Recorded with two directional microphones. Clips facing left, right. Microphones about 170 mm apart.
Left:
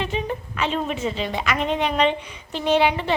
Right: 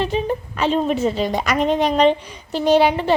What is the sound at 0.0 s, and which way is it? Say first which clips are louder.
A woman's voice: right 5 dB; 35° right (ahead or behind).